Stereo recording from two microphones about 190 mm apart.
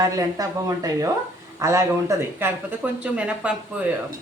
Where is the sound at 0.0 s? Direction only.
15° right (ahead or behind).